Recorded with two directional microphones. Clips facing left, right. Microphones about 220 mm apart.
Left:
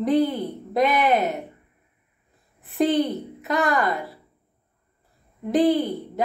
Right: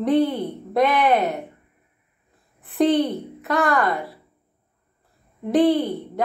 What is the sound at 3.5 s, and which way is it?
Speech, 20° left (ahead or behind).